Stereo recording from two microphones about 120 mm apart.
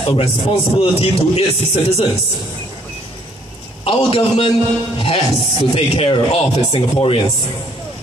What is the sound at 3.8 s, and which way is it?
Speech, 50° left (ahead or behind).